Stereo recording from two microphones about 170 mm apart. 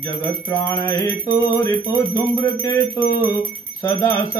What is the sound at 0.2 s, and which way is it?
Music, 10° left (ahead or behind).